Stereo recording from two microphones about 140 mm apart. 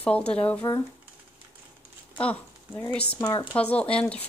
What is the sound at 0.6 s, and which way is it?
Speech, 30° left (ahead or behind).